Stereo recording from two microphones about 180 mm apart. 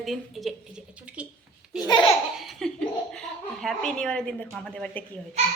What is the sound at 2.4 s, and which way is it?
Speech, centre (ahead or behind).